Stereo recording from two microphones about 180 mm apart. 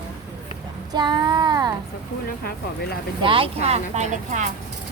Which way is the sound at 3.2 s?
30° right (ahead or behind).